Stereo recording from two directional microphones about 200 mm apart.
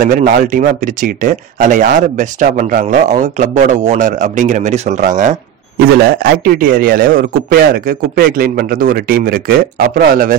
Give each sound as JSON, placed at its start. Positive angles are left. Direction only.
{"t": 0.0, "sound": "a man's voice", "side_deg": -45}